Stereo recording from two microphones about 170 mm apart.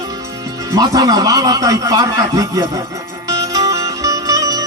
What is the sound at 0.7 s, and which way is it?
A man's voice, 20° right (ahead or behind).